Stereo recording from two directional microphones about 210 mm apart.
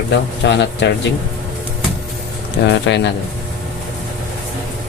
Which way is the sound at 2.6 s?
50° left (ahead or behind).